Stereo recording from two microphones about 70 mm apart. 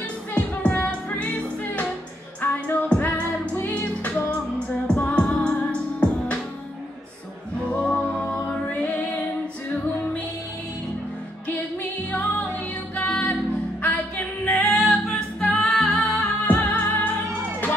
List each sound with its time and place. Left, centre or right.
0.3 s music: centre
2.4 s music: left
7.6 s music: centre
12.1 s music: left
13.8 s female singing: left
15.5 s singing: centre
16.0 s humming: centre
16.4 s music: left